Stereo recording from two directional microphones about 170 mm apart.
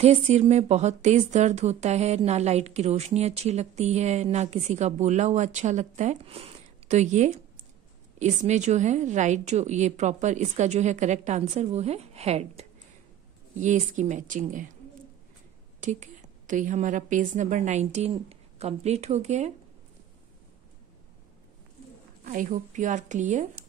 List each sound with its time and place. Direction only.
0.0 s a woman's voice: 40° right (ahead or behind)
15.8 s speech: 45° right (ahead or behind)
22.2 s speech: 50° right (ahead or behind)